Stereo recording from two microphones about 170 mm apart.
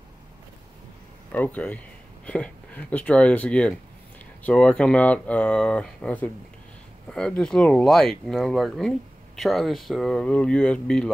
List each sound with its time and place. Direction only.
1.3 s speech: 10° left (ahead or behind)